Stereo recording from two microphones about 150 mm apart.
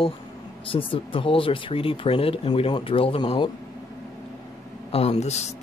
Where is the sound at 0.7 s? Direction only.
35° left (ahead or behind).